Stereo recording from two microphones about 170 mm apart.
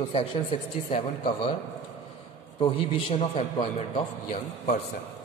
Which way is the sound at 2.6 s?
30° left (ahead or behind).